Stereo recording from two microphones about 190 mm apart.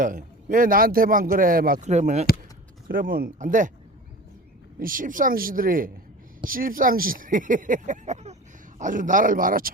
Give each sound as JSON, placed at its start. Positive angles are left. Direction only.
{"t": 0.0, "sound": "speech", "side_deg": -45}
{"t": 1.9, "sound": "speech", "side_deg": -35}
{"t": 2.9, "sound": "speech", "side_deg": -50}
{"t": 4.8, "sound": "speech", "side_deg": -45}